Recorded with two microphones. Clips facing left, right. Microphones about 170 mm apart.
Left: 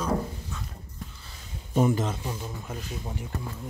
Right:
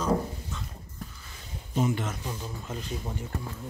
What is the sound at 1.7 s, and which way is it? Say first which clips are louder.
Speech: left 4 dB; 45° left (ahead or behind).